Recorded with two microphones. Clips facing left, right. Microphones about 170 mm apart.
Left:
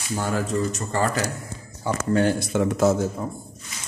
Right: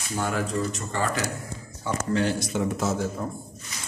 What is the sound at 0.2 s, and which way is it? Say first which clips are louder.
Speech: left 2 dB; 40° left (ahead or behind).